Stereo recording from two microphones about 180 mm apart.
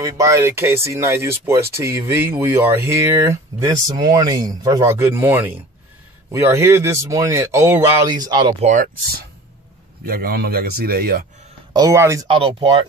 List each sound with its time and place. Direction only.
0.0 s speech: 15° right (ahead or behind)
8.5 s speech: 40° right (ahead or behind)
10.0 s speech: 55° right (ahead or behind)
11.7 s speech: 15° right (ahead or behind)
12.3 s speech: 30° right (ahead or behind)